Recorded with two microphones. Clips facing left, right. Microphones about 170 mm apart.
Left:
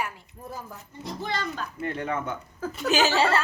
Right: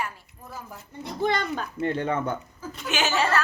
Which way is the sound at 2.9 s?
35° left (ahead or behind).